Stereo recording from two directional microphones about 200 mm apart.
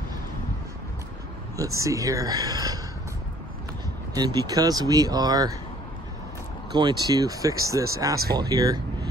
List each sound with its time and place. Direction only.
1.6 s speech: 15° right (ahead or behind)
4.1 s speech: 20° right (ahead or behind)
6.7 s speech: 20° right (ahead or behind)